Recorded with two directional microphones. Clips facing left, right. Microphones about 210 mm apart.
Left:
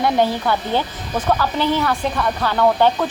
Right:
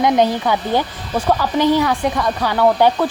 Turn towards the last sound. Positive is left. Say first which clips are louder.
# right 2 dB
turn(degrees=-10)  # may be behind; listen again after turning